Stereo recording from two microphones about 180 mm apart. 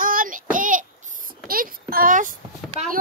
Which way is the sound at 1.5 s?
55° right (ahead or behind).